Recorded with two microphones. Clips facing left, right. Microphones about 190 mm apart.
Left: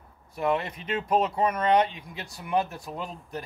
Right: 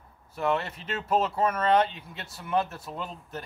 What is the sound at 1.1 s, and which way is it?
Speech, 10° left (ahead or behind).